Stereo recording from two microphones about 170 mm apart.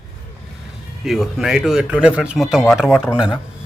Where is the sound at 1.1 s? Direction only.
Centre (ahead or behind).